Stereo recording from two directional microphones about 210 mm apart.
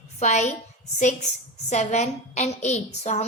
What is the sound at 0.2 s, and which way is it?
Speech, 35° left (ahead or behind).